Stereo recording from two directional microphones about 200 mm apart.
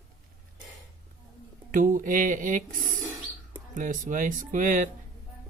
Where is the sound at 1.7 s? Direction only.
40° right (ahead or behind).